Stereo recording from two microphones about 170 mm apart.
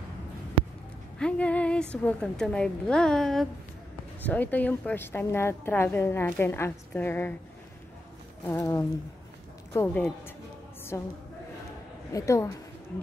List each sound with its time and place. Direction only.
1.1 s a woman's voice: 5° left (ahead or behind)
8.5 s a woman's voice: 15° left (ahead or behind)
12.1 s a woman's voice: 20° left (ahead or behind)